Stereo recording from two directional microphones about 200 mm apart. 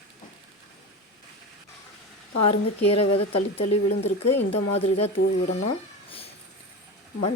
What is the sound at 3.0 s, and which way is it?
Speech, 30° left (ahead or behind).